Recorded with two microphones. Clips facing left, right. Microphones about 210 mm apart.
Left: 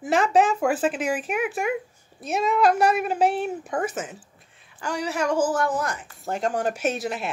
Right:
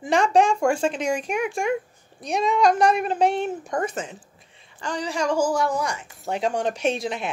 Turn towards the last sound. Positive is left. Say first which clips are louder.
# right 1 dB
turn(degrees=5)  # may be behind; listen again after turning